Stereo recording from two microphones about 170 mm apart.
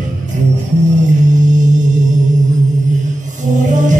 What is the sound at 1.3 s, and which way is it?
Music, 45° right (ahead or behind).